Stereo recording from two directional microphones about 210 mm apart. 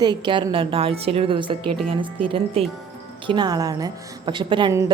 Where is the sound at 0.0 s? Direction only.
20° right (ahead or behind).